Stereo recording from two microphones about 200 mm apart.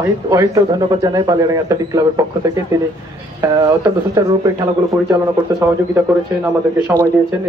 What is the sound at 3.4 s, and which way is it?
Speech, 15° right (ahead or behind).